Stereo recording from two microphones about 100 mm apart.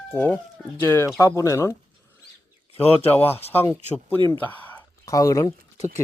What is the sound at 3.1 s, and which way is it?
Speech, 20° left (ahead or behind).